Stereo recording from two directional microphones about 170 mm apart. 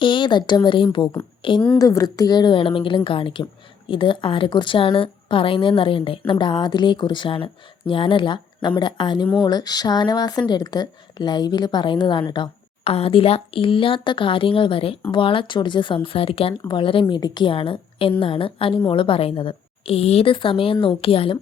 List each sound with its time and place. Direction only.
0.0 s a woman's voice: 30° left (ahead or behind)